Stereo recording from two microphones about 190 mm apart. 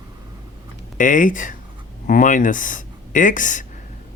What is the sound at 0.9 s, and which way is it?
Speech, 45° left (ahead or behind).